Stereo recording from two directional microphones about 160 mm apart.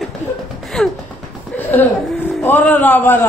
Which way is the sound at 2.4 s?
10° left (ahead or behind).